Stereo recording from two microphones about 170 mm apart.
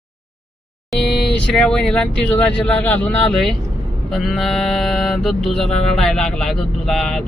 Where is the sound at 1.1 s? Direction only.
75° left (ahead or behind).